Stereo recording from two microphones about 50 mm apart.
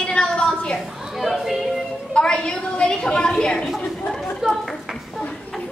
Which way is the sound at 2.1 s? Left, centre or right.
Centre.